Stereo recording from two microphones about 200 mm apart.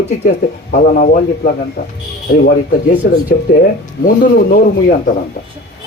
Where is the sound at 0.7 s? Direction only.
40° left (ahead or behind).